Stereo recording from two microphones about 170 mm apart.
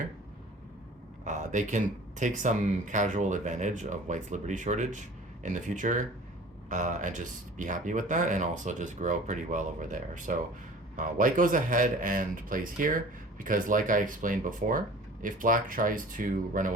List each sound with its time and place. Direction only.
1.2 s speech: 45° right (ahead or behind)